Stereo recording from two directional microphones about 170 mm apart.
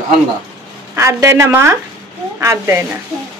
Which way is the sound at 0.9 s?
15° right (ahead or behind).